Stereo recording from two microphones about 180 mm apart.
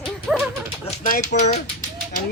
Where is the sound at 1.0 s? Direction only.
45° left (ahead or behind).